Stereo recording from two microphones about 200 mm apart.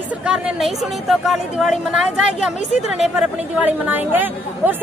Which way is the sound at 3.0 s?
5° right (ahead or behind).